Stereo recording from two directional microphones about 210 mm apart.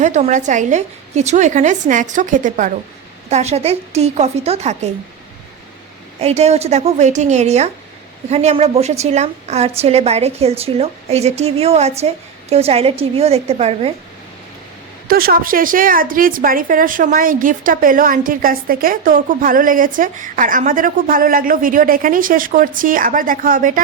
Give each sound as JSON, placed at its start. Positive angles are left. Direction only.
{"t": 0.0, "sound": "a woman's voice", "side_deg": -35}
{"t": 6.1, "sound": "a woman's voice", "side_deg": -30}
{"t": 15.0, "sound": "a woman's voice", "side_deg": -45}